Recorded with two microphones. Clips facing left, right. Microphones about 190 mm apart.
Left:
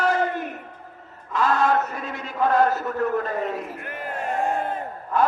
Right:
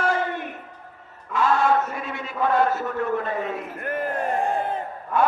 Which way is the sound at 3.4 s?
Centre (ahead or behind).